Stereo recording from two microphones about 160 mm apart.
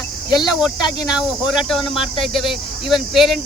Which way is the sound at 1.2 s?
5° right (ahead or behind).